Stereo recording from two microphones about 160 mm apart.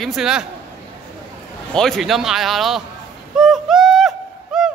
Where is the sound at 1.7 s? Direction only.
Centre (ahead or behind).